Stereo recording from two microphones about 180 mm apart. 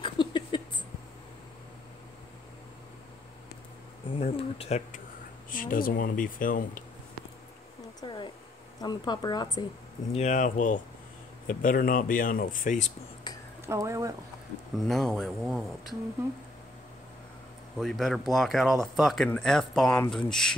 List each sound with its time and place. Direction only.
0.0 s a sound: 25° left (ahead or behind)
4.2 s speech: 35° left (ahead or behind)
5.5 s speech: 50° left (ahead or behind)
8.0 s a sound: 25° left (ahead or behind)
8.8 s a woman's voice: 25° left (ahead or behind)
10.1 s speech: 45° left (ahead or behind)
13.7 s speech: 15° right (ahead or behind)
14.8 s speech: centre (ahead or behind)
17.7 s speech: centre (ahead or behind)